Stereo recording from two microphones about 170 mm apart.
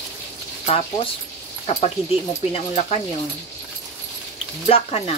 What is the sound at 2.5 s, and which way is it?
Speech, 35° left (ahead or behind).